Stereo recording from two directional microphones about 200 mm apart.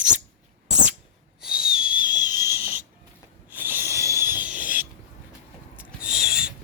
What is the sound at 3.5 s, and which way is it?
Rub, 10° right (ahead or behind).